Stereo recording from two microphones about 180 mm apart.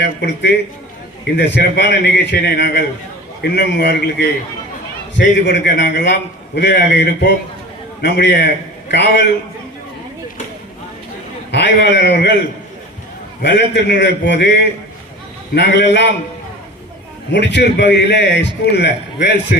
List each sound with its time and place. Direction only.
0.0 s a man's voice: 70° left (ahead or behind)
5.1 s a man's voice: 75° left (ahead or behind)
11.5 s a man's voice: 75° left (ahead or behind)
13.4 s a man's voice: 75° left (ahead or behind)
15.5 s a man's voice: 75° left (ahead or behind)
17.3 s a man's voice: 70° left (ahead or behind)